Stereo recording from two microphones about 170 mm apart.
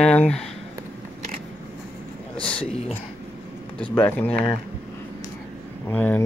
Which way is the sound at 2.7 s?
35° left (ahead or behind).